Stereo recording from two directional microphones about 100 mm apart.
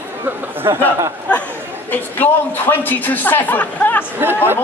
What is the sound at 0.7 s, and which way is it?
Speech, 30° right (ahead or behind).